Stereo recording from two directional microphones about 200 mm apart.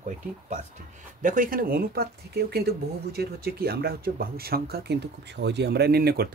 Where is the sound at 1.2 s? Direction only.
40° right (ahead or behind).